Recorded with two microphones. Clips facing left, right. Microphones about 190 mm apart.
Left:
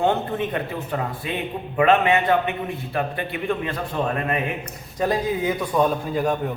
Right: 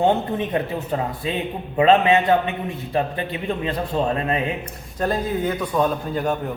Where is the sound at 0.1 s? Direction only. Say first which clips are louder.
Right 2 dB; 25° right (ahead or behind).